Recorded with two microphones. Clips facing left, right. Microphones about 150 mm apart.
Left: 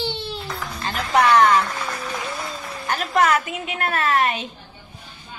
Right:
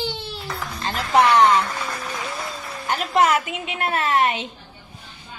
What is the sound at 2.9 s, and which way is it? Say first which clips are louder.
A woman's voice: even; 25° right (ahead or behind).